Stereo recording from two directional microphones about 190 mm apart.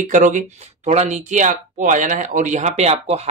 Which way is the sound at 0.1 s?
40° right (ahead or behind).